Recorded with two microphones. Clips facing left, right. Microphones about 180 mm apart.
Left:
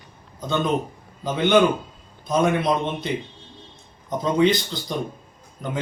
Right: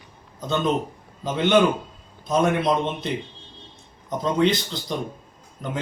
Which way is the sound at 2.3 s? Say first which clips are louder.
Even; centre (ahead or behind).